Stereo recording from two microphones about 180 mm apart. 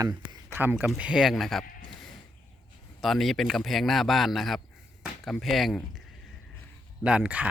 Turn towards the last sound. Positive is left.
turn(degrees=-5)  # may be behind; listen again after turning